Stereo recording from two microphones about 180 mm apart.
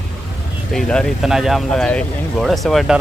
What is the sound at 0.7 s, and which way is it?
Speech, 5° left (ahead or behind).